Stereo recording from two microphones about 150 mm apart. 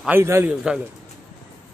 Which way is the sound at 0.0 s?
15° right (ahead or behind).